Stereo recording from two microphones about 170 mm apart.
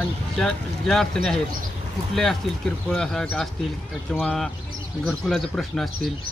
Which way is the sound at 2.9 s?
5° left (ahead or behind).